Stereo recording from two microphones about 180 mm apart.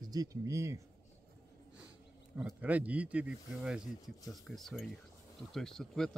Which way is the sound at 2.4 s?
5° right (ahead or behind).